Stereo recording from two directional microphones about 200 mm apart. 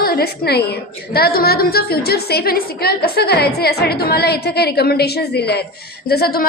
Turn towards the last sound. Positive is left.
turn(degrees=50)  # may be behind; listen again after turning